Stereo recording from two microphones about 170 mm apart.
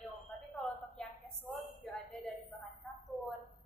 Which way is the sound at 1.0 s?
5° left (ahead or behind).